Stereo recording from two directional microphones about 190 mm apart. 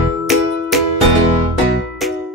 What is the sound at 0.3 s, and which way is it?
Music, centre (ahead or behind).